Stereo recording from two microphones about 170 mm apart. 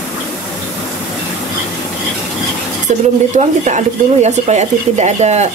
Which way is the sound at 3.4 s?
45° right (ahead or behind).